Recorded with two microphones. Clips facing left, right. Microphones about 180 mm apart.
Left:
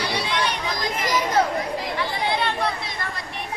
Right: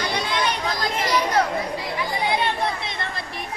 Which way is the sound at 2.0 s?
15° right (ahead or behind).